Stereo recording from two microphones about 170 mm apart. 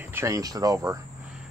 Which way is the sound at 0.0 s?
15° right (ahead or behind).